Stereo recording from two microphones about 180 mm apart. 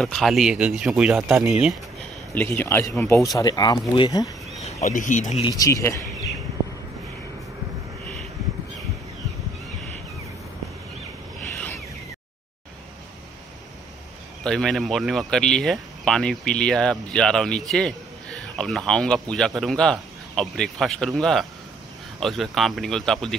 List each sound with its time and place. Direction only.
0.0 s speech: centre (ahead or behind)
2.3 s speech: 10° left (ahead or behind)
4.6 s speech: 40° left (ahead or behind)
5.4 s speech: 20° left (ahead or behind)
14.4 s speech: 5° left (ahead or behind)